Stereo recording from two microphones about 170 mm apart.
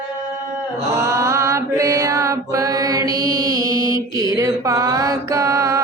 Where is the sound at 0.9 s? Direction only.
15° right (ahead or behind).